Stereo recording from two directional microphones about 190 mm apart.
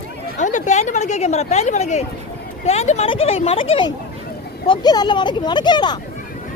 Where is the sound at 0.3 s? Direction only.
40° left (ahead or behind); by 6.0 s 25° left (ahead or behind).